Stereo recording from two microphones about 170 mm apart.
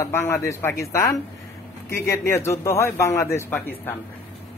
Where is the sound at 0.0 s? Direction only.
15° left (ahead or behind).